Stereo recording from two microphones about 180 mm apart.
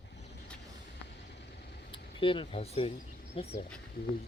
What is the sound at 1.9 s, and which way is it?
Speech, 30° left (ahead or behind).